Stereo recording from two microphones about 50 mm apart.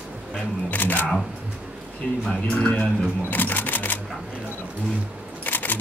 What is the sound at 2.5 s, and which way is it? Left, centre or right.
Speech, left.